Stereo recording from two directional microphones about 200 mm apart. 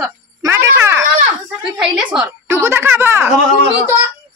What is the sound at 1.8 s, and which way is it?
A woman's voice, 5° right (ahead or behind).